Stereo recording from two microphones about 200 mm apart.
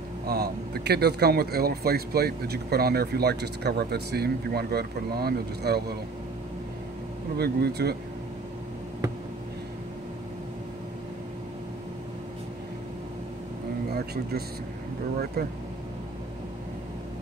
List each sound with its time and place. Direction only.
0.3 s speech: 50° right (ahead or behind)
7.3 s speech: 50° right (ahead or behind)
13.9 s a sound: 50° right (ahead or behind)
15.4 s speech: 50° right (ahead or behind)